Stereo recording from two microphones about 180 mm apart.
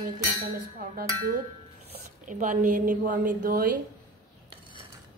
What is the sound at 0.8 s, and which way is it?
Speech, 55° right (ahead or behind).